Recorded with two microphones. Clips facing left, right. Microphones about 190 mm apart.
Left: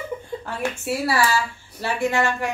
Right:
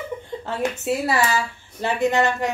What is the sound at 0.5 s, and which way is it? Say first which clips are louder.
A woman's voice: right 3 dB; 20° right (ahead or behind).